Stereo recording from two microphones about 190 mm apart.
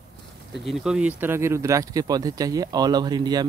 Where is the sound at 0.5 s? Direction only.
Centre (ahead or behind).